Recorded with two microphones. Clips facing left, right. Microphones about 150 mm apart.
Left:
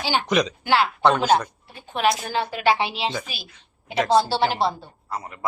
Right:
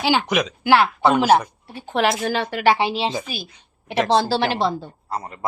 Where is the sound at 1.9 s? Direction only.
80° right.